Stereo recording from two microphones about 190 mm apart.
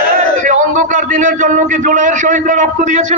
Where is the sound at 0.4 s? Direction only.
40° right (ahead or behind).